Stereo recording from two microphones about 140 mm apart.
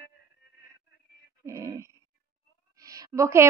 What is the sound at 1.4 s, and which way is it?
A woman's voice, 20° right (ahead or behind).